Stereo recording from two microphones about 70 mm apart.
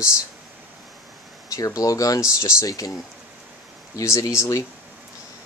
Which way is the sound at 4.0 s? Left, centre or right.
Left.